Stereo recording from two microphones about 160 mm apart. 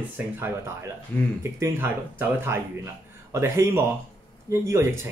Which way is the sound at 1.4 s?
15° right (ahead or behind).